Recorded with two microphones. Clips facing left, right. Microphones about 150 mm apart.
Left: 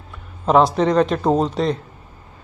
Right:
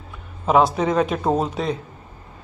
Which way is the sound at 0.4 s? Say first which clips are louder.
Left 2 dB; 5° right (ahead or behind).